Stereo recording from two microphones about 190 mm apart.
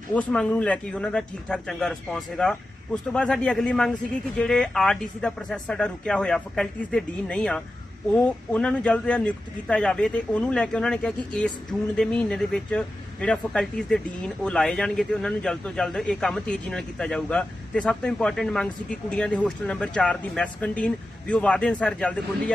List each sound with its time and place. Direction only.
0.1 s speech: 5° left (ahead or behind)